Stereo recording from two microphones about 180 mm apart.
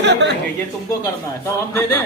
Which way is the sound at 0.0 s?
75° right (ahead or behind).